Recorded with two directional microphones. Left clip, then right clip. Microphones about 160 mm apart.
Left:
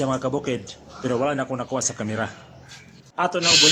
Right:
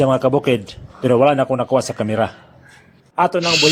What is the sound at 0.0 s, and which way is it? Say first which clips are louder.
A man's voice: right 9 dB; 45° right (ahead or behind).